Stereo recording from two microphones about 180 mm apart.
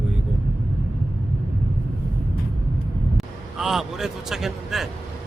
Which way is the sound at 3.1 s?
Centre (ahead or behind).